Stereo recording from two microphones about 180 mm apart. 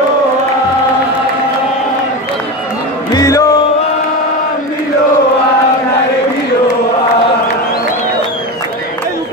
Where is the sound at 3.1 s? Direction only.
20° left (ahead or behind).